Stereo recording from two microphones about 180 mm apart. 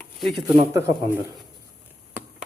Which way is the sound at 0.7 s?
15° right (ahead or behind).